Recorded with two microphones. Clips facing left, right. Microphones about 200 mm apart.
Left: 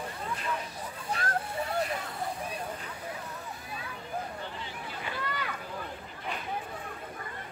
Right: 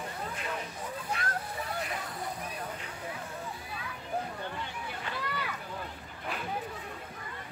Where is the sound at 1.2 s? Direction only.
30° left (ahead or behind).